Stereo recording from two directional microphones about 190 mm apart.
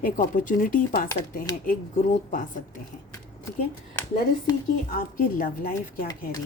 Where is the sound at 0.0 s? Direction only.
45° left (ahead or behind).